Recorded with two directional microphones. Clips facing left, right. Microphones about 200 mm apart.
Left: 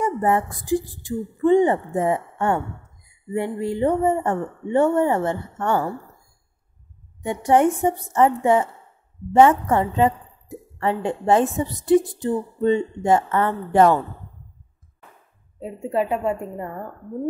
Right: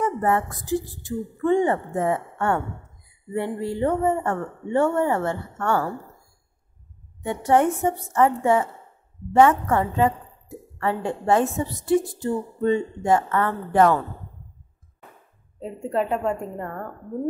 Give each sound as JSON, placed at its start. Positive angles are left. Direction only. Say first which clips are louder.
{"t": 0.2, "sound": "a woman's voice", "louder": "left 2 dB", "side_deg": 15}
{"t": 7.2, "sound": "a woman's voice", "louder": "left 2 dB", "side_deg": 15}
{"t": 15.6, "sound": "speech", "louder": "left 1 dB", "side_deg": 10}